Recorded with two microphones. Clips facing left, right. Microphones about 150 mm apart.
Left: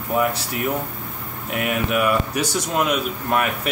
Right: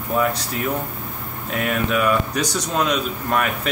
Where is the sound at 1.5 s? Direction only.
15° left (ahead or behind).